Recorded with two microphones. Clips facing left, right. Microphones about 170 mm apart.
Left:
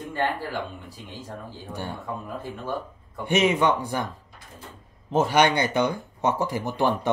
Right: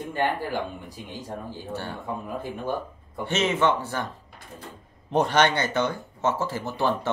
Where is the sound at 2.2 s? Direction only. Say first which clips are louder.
Right 2 dB; 15° right (ahead or behind).